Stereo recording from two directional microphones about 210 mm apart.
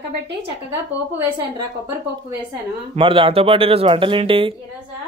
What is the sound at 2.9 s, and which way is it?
A woman's voice, 25° right (ahead or behind).